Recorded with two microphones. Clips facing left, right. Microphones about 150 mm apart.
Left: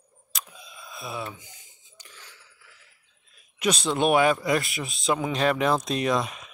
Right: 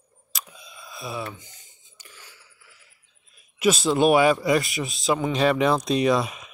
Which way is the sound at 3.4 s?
5° right (ahead or behind).